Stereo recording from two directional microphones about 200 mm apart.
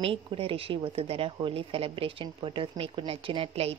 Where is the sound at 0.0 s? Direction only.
25° right (ahead or behind).